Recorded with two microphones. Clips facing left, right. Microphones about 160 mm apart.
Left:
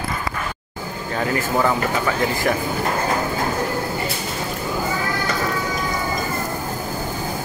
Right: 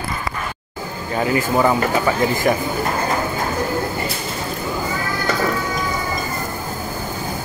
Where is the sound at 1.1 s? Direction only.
15° right (ahead or behind).